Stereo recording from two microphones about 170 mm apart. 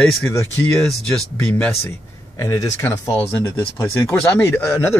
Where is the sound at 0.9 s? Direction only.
5° left (ahead or behind).